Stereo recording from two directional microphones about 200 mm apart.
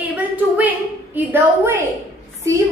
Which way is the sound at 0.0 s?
10° right (ahead or behind).